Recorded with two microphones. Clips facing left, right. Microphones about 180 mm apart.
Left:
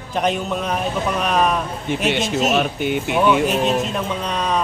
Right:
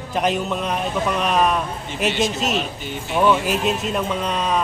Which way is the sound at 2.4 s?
55° left (ahead or behind).